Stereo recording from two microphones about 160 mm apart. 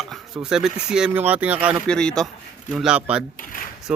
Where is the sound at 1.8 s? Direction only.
5° left (ahead or behind).